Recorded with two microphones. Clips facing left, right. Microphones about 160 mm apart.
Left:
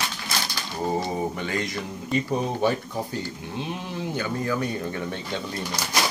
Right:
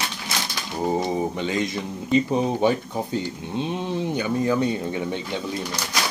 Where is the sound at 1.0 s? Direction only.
20° right (ahead or behind).